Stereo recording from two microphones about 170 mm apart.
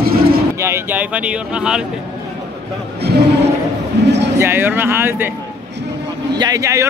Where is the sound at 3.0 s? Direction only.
75° right (ahead or behind).